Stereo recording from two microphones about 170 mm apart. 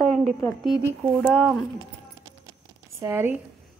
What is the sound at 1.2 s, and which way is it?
Speech, 5° left (ahead or behind).